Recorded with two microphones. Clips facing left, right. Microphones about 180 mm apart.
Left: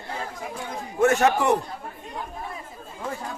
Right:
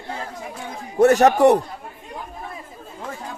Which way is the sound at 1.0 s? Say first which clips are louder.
Right 6 dB; 40° right (ahead or behind).